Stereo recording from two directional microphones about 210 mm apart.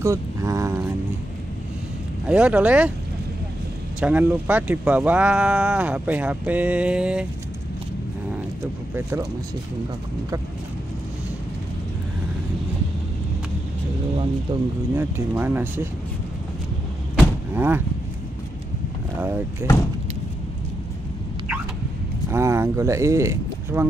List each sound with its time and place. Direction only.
0.0 s vehicle: 15° right (ahead or behind)
2.2 s speech: 5° right (ahead or behind)
4.0 s speech: 5° right (ahead or behind)
14.5 s speech: 20° right (ahead or behind)
15.0 s speech: 10° right (ahead or behind)
17.6 s speech: 10° right (ahead or behind)
19.2 s speech: 10° right (ahead or behind)
22.3 s speech: 15° right (ahead or behind)